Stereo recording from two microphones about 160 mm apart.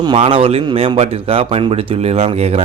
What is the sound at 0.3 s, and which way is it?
Speech, 35° right (ahead or behind).